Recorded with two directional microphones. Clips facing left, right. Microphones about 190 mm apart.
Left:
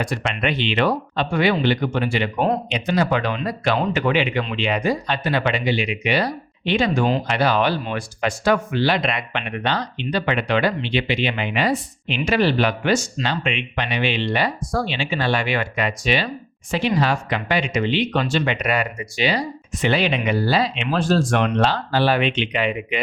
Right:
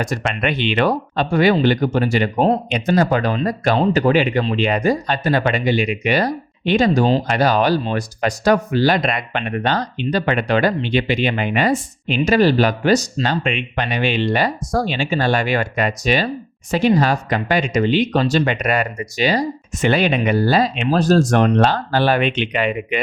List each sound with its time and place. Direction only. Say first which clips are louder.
0.0 s speech: right 2 dB; 45° right (ahead or behind)
12.0 s speech: right 5 dB; 40° right (ahead or behind)